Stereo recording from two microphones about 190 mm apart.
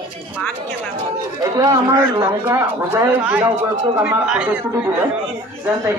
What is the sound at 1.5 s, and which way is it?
Speech, 20° right (ahead or behind).